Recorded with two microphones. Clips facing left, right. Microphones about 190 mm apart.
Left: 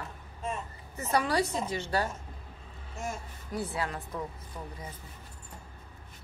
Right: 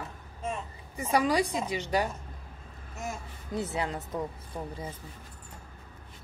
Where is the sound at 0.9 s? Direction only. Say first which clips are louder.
Right 2 dB; 15° right (ahead or behind).